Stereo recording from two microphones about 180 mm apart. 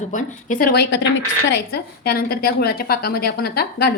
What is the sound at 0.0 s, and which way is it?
A woman's voice, 45° left (ahead or behind).